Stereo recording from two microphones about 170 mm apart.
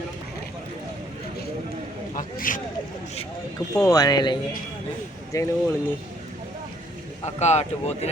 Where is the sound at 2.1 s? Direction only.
50° left (ahead or behind).